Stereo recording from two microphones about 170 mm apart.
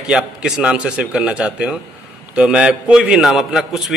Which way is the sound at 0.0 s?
5° right (ahead or behind).